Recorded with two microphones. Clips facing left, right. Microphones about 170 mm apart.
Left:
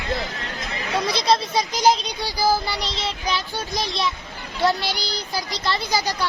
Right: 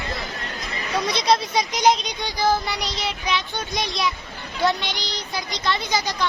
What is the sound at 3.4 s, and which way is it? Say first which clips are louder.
A child's voice: even; 5° left (ahead or behind).